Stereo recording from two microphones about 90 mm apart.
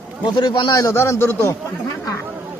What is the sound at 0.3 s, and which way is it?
Speech, 60° left (ahead or behind).